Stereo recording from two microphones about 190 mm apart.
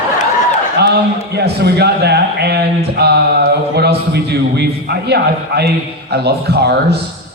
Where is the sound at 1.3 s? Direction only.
60° right (ahead or behind).